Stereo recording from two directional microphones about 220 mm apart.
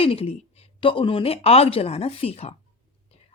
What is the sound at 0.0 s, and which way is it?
Speech, 25° left (ahead or behind).